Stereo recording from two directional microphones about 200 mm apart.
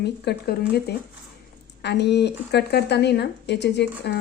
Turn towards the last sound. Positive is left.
turn(degrees=60)  # may be behind; listen again after turning